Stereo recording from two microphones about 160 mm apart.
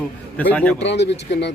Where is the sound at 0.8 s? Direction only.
90° left.